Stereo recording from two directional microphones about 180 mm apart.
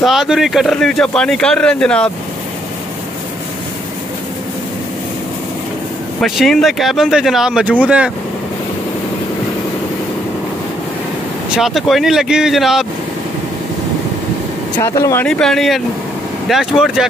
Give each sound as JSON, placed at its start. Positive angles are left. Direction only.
{"t": 0.0, "sound": "speech", "side_deg": 0}
{"t": 6.2, "sound": "speech", "side_deg": 0}
{"t": 11.5, "sound": "speech", "side_deg": 0}
{"t": 14.8, "sound": "speech", "side_deg": 15}
{"t": 15.2, "sound": "speech", "side_deg": 5}